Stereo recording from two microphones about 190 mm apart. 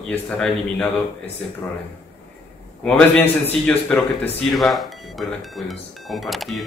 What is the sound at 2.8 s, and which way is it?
Speech, 5° left (ahead or behind).